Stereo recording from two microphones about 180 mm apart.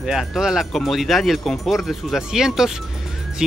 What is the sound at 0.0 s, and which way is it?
Speech, centre (ahead or behind).